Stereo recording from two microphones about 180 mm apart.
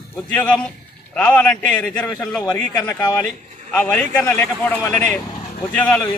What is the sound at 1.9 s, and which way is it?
Speech, 20° left (ahead or behind).